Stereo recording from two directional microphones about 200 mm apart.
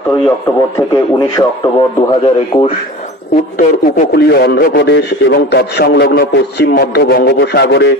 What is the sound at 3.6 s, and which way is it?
A man's voice, 50° left (ahead or behind).